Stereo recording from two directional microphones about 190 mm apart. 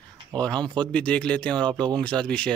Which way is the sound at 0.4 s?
5° left (ahead or behind).